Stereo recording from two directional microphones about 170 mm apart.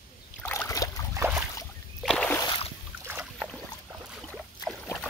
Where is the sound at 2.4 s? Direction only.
30° left (ahead or behind).